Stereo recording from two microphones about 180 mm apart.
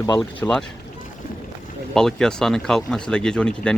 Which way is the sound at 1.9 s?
5° left (ahead or behind).